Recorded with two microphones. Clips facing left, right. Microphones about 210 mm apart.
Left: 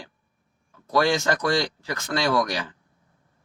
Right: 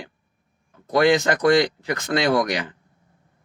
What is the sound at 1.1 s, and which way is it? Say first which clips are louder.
Speech: right 5 dB; 60° right (ahead or behind).